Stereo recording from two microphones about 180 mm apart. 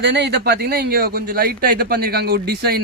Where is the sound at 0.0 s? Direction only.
70° right (ahead or behind).